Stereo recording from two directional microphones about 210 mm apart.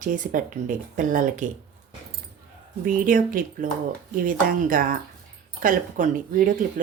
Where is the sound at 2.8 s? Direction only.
40° right (ahead or behind).